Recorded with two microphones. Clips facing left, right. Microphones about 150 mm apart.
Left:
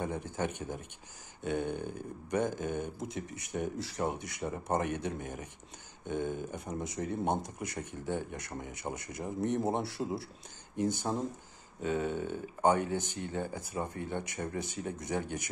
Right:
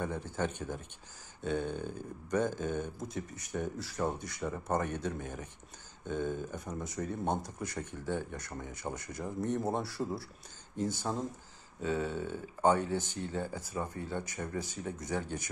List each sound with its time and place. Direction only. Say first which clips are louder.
0.0 s speech: even; 15° left (ahead or behind)